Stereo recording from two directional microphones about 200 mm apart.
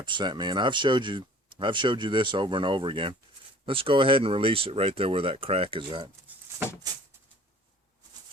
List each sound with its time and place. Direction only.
0.0 s speech: 20° right (ahead or behind)